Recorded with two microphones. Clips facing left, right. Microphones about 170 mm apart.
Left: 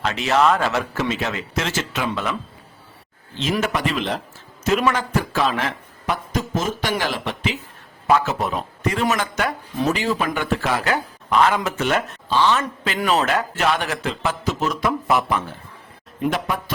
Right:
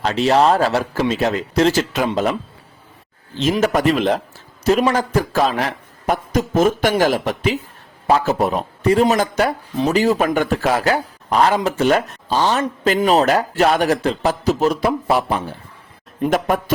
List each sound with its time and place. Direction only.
0.0 s speech: 35° right (ahead or behind)
3.6 s speech: 40° right (ahead or behind)
6.9 s speech: 45° right (ahead or behind)
16.3 s speech: 45° right (ahead or behind)